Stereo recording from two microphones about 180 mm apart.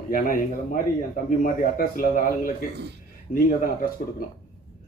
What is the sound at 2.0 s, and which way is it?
A man's voice, 50° left (ahead or behind).